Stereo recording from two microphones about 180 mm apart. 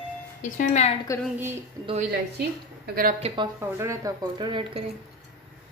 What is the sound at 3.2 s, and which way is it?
Speech, 35° right (ahead or behind).